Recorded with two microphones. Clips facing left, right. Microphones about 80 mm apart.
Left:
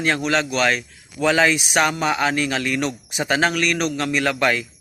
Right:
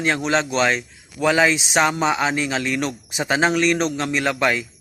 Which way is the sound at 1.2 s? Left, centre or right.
Centre.